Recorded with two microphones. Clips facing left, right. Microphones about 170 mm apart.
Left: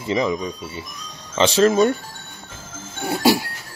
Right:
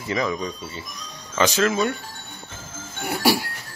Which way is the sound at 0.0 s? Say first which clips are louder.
Left 3 dB; 20° left (ahead or behind).